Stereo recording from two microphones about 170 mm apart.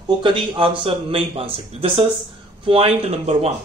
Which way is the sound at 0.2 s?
30° right (ahead or behind).